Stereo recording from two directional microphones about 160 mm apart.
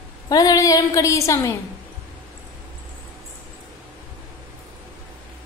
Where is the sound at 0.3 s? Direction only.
20° left (ahead or behind).